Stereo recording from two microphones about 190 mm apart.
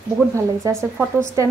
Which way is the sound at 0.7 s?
15° right (ahead or behind).